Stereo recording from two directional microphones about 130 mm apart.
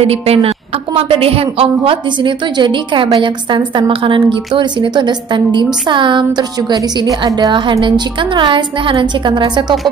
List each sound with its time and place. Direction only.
0.0 s a woman's voice: 50° right (ahead or behind); by 9.8 s 35° right (ahead or behind)